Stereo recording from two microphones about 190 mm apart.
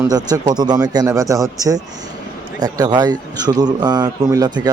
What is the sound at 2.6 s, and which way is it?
A man's voice, 20° right (ahead or behind).